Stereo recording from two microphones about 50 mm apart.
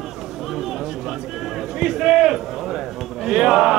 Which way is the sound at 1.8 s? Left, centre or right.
Centre.